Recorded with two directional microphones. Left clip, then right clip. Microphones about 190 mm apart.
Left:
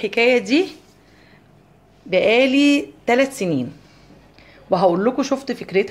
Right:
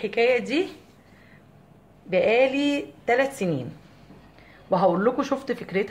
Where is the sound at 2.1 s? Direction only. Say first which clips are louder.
Left 5 dB; 40° left (ahead or behind).